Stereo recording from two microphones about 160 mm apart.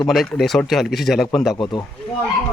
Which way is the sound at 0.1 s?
Centre (ahead or behind).